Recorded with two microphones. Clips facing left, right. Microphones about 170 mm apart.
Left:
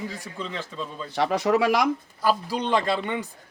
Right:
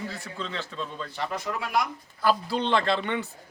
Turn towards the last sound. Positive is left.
turn(degrees=10)  # may be behind; listen again after turning